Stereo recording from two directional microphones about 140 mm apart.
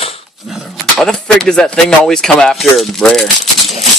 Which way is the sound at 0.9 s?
5° left (ahead or behind).